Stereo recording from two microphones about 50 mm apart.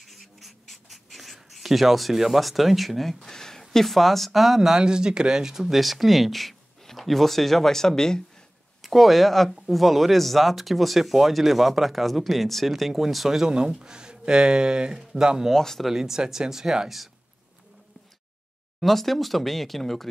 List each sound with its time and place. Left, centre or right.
0.0 s writing: centre
3.7 s speech: centre
8.8 s speech: centre
15.5 s speech: centre
15.9 s speech: centre
18.8 s speech: centre